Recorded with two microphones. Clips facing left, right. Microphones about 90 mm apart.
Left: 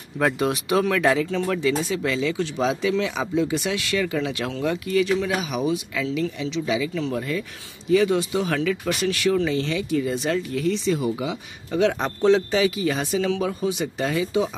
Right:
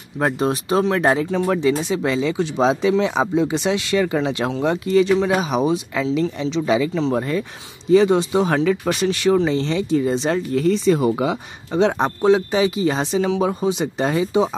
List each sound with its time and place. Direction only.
0.2 s speech: 35° right (ahead or behind)
1.3 s speech: 20° right (ahead or behind)
6.6 s speech: 45° right (ahead or behind)
6.9 s speech: 30° right (ahead or behind); by 11.3 s 55° right (ahead or behind)
11.7 s speech: 25° right (ahead or behind)
12.2 s speech: 15° right (ahead or behind); by 14.5 s 30° right (ahead or behind)